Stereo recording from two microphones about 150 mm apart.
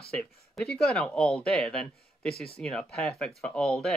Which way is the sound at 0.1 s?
5° left (ahead or behind).